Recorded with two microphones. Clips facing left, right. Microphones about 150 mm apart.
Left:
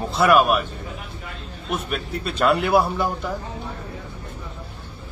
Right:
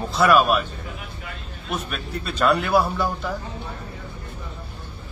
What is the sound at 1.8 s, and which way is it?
Speech, 20° left (ahead or behind).